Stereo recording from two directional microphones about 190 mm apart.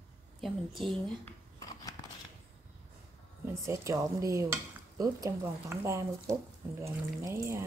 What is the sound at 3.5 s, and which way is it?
Speech, 15° right (ahead or behind).